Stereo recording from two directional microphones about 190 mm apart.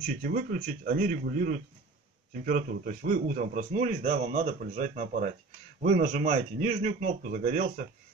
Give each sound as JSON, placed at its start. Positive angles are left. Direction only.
{"t": 0.0, "sound": "a man's voice", "side_deg": -45}